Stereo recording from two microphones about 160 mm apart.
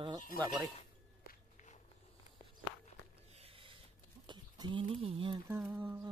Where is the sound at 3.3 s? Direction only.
40° right (ahead or behind).